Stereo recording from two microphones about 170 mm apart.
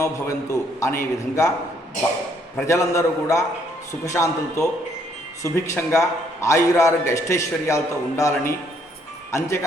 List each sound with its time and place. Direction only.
0.0 s a man's voice: 20° left (ahead or behind)
2.6 s a man's voice: 15° left (ahead or behind)